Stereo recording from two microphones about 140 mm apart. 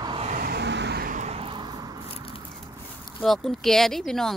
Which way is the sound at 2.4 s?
35° right (ahead or behind).